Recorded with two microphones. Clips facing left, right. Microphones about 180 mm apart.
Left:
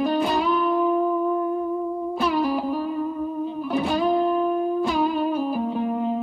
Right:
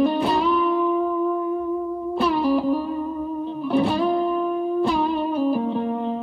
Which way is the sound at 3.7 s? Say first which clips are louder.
Right 5 dB; 30° right (ahead or behind).